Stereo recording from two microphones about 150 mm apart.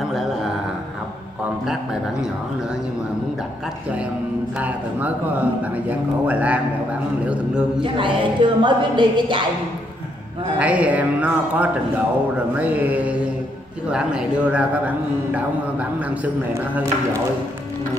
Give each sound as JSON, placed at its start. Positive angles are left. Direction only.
{"t": 4.6, "sound": "a man's voice", "side_deg": -10}
{"t": 7.8, "sound": "music", "side_deg": -35}
{"t": 10.6, "sound": "a man's voice", "side_deg": -10}